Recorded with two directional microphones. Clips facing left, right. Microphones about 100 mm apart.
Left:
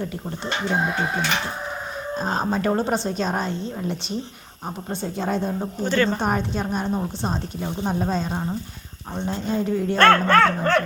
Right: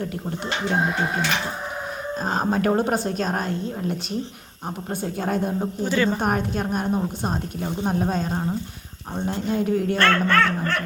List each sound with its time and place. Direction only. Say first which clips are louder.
2.2 s a woman's voice: right 1 dB; 5° right (ahead or behind)
10.0 s dog: left 6 dB; 40° left (ahead or behind)